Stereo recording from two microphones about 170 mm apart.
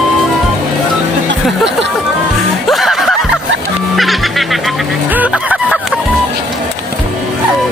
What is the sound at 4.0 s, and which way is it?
Music, centre (ahead or behind).